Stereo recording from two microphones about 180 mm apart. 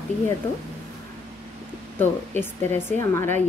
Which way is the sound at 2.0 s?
10° left (ahead or behind).